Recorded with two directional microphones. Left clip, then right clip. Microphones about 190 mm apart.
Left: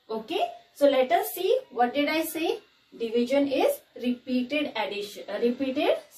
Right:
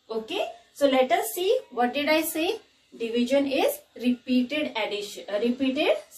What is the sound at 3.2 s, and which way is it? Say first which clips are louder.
Speech: even; 20° right (ahead or behind).